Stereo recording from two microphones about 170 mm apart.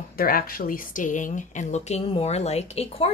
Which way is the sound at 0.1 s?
60° left (ahead or behind).